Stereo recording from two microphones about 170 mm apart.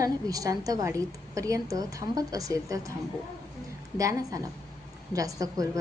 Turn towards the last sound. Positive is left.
turn(degrees=-20)  # may be behind; listen again after turning